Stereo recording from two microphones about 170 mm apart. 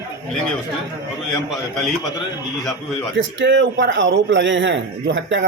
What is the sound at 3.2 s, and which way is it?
Speech, 90° right.